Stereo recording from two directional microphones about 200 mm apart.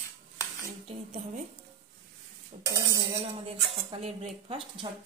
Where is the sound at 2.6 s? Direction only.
15° right (ahead or behind).